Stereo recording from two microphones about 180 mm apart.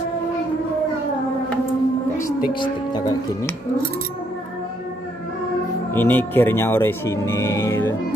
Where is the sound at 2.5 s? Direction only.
25° left (ahead or behind).